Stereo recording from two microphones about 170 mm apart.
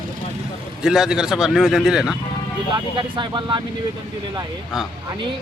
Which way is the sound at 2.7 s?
30° right (ahead or behind).